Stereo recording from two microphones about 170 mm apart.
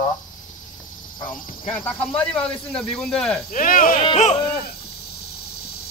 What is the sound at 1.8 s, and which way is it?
Speech, 10° left (ahead or behind).